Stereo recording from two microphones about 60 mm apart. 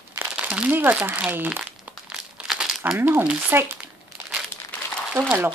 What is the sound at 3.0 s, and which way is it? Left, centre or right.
Speech, right.